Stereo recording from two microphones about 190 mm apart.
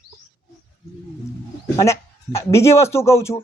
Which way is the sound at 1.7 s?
15° left (ahead or behind).